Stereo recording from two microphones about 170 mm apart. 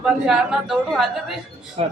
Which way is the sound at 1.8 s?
35° right (ahead or behind).